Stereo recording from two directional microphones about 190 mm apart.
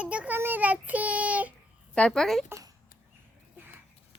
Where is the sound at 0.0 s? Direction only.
5° right (ahead or behind).